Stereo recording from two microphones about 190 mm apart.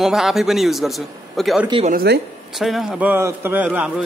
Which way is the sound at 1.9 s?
55° right (ahead or behind).